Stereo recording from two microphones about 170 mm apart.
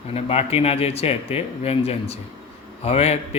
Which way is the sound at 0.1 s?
35° left (ahead or behind).